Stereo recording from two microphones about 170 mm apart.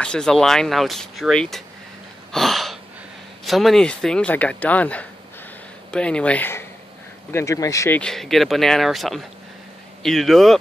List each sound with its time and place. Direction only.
0.0 s speech: 5° left (ahead or behind)
2.3 s a sound: centre (ahead or behind)
3.4 s speech: centre (ahead or behind); by 8.0 s 20° left (ahead or behind)
8.0 s speech: centre (ahead or behind)